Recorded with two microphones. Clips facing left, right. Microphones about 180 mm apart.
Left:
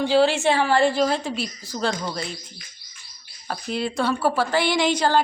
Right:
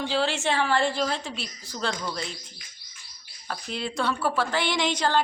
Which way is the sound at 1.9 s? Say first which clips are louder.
Left 4 dB; 35° left (ahead or behind).